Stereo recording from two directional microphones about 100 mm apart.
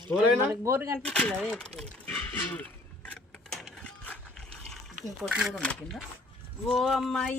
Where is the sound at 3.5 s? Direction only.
10° left (ahead or behind).